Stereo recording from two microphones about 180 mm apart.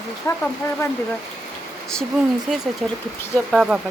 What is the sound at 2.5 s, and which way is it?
Speech, centre (ahead or behind).